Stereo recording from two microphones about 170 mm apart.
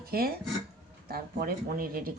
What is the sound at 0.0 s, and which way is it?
Speech, 60° right (ahead or behind).